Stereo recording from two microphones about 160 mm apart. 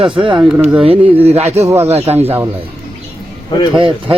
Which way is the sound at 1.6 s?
15° right (ahead or behind).